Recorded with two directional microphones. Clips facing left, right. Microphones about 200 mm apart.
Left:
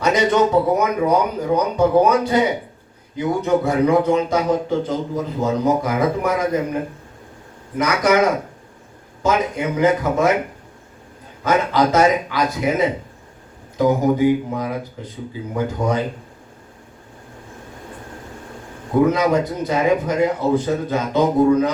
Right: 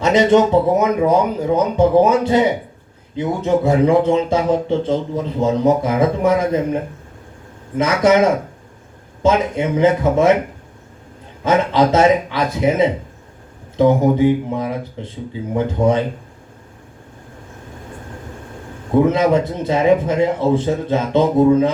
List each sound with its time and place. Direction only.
0.0 s speech: 25° right (ahead or behind)
7.8 s speech: 25° right (ahead or behind)
11.4 s speech: 25° right (ahead or behind)
18.9 s speech: 25° right (ahead or behind)